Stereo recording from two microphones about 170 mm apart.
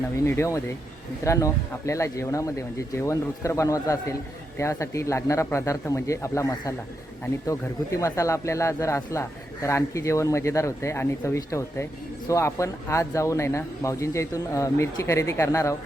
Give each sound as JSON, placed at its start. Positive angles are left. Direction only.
{"t": 0.3, "sound": "speech", "side_deg": 15}